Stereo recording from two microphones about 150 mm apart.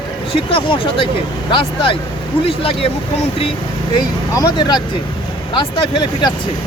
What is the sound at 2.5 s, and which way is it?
Speech, 40° left (ahead or behind).